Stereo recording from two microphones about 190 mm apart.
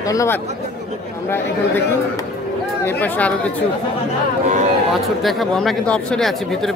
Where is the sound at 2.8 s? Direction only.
10° left (ahead or behind).